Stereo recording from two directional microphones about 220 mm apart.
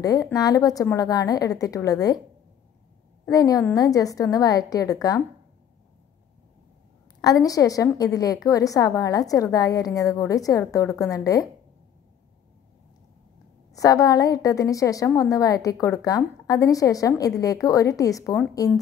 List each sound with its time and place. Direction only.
0.0 s a woman's voice: 15° left (ahead or behind)
3.3 s a woman's voice: 15° left (ahead or behind)
7.2 s a woman's voice: 15° left (ahead or behind)
13.7 s a woman's voice: 15° left (ahead or behind)